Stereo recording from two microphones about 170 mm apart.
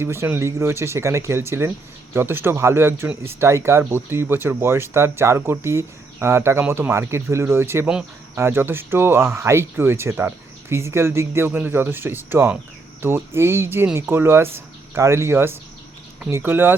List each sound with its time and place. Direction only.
0.0 s speech: 15° right (ahead or behind)